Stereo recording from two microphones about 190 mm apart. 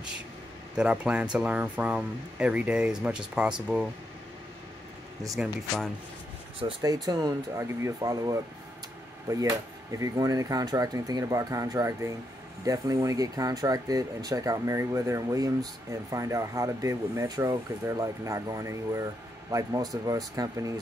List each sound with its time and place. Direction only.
0.7 s speech: 5° right (ahead or behind)
5.3 s speech: centre (ahead or behind)
6.6 s speech: 20° right (ahead or behind)